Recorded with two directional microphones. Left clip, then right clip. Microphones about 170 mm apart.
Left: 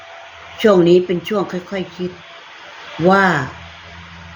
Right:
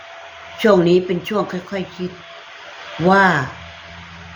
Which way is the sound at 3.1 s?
15° right (ahead or behind).